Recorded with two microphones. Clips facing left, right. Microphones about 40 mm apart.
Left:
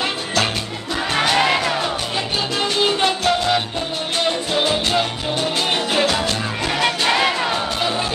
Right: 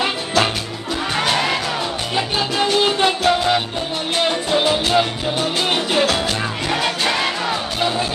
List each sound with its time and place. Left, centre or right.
0.0 s music: centre
2.1 s music: centre
6.8 s music: centre